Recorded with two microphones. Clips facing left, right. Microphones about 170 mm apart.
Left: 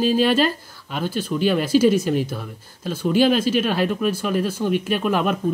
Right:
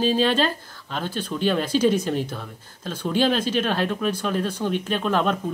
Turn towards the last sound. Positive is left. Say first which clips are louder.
# left 2 dB
turn(degrees=10)  # may be behind; listen again after turning